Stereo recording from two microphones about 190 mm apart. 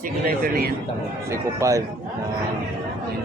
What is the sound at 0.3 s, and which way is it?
Speech, 50° right (ahead or behind).